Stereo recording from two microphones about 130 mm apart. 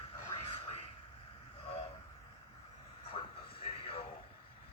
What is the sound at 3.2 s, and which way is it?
Vehicle, 40° left (ahead or behind).